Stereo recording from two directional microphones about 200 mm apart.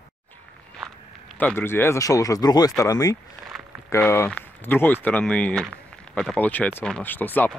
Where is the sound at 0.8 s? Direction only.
5° left (ahead or behind).